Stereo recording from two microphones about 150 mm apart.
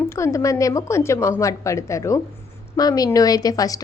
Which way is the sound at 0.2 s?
20° left (ahead or behind).